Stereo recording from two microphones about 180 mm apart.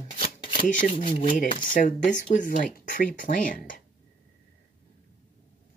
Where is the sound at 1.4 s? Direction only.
45° left (ahead or behind).